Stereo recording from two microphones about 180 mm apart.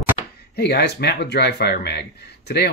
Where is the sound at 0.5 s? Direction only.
65° left (ahead or behind).